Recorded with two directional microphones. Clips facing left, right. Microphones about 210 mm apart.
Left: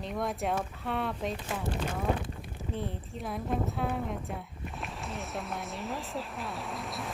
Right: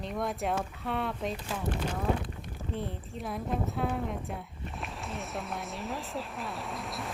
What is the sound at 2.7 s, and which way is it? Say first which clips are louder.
A woman's voice: even; centre (ahead or behind).